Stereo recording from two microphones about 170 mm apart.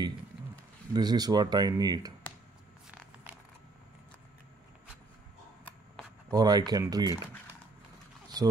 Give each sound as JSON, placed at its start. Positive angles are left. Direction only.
{"t": 0.9, "sound": "speech", "side_deg": -25}
{"t": 6.3, "sound": "speech", "side_deg": -25}
{"t": 8.3, "sound": "speech", "side_deg": -25}